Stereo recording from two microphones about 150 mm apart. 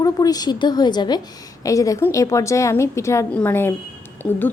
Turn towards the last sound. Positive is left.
turn(degrees=5)  # may be behind; listen again after turning